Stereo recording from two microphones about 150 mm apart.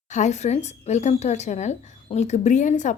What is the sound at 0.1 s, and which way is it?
Speech, 50° left (ahead or behind).